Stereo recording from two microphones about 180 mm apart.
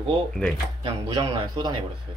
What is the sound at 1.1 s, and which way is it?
Speech, 20° right (ahead or behind).